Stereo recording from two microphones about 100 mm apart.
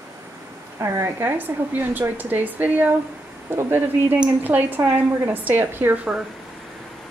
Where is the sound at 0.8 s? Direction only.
25° right (ahead or behind).